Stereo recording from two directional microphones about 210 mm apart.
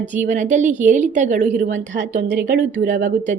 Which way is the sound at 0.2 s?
35° right (ahead or behind).